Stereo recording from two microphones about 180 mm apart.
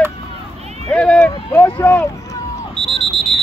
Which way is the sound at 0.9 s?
5° left (ahead or behind).